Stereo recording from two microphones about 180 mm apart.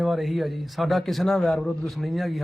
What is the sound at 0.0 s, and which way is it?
Speech, centre (ahead or behind).